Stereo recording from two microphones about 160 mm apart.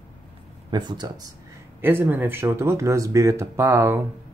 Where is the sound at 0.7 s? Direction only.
25° right (ahead or behind).